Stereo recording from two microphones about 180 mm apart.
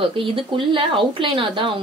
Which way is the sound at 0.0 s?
30° right (ahead or behind).